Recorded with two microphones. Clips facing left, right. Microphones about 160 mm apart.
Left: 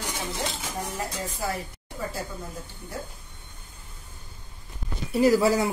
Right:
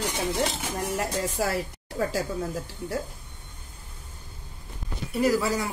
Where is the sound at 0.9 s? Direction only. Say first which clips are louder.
Right 5 dB; 90° right.